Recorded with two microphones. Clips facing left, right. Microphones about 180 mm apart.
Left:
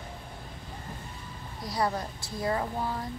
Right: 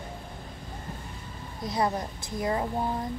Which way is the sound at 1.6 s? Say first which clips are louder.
Right 2 dB; 20° right (ahead or behind).